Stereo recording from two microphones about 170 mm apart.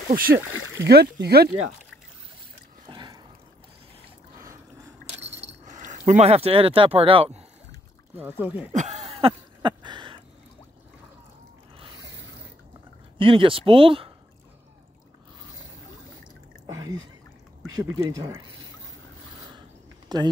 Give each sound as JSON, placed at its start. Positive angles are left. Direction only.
{"t": 0.1, "sound": "speech", "side_deg": -60}
{"t": 2.9, "sound": "a sound", "side_deg": -25}
{"t": 5.2, "sound": "keys jangling", "side_deg": -40}
{"t": 8.2, "sound": "speech", "side_deg": -10}
{"t": 8.7, "sound": "a sound", "side_deg": -40}
{"t": 13.2, "sound": "speech", "side_deg": -30}
{"t": 16.6, "sound": "a sound", "side_deg": -20}
{"t": 17.6, "sound": "speech", "side_deg": -20}
{"t": 20.1, "sound": "speech", "side_deg": -25}